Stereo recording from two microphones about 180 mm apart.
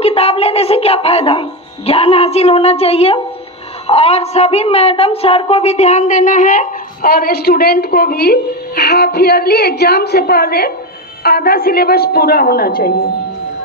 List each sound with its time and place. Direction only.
0.0 s a woman's voice: 35° left (ahead or behind); by 13.1 s 55° left (ahead or behind)